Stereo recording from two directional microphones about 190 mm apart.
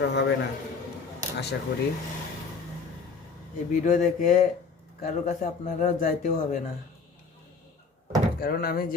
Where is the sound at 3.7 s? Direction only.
40° left (ahead or behind).